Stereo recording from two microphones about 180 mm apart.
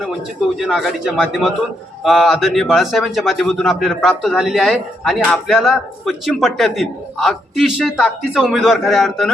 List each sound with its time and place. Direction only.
0.5 s speech: centre (ahead or behind)